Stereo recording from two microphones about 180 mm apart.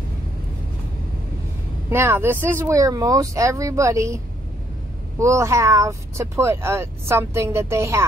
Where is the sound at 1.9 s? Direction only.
15° right (ahead or behind).